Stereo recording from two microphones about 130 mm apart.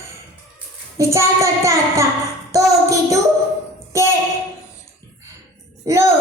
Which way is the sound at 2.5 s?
25° right (ahead or behind).